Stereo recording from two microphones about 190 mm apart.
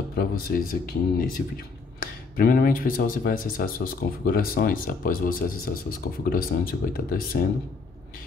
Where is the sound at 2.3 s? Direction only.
50° left (ahead or behind).